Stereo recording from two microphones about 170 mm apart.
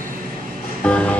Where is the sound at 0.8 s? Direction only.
5° left (ahead or behind).